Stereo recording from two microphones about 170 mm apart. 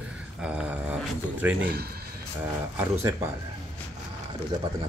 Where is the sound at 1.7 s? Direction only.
70° right (ahead or behind).